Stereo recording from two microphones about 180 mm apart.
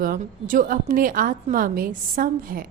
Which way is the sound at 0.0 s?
50° right (ahead or behind).